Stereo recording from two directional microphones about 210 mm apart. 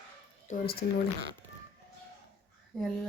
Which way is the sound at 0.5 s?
35° left (ahead or behind).